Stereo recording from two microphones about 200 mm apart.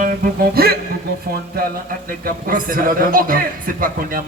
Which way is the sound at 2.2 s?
45° right (ahead or behind).